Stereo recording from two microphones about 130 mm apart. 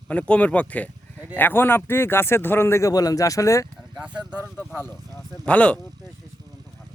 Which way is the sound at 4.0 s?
10° right (ahead or behind).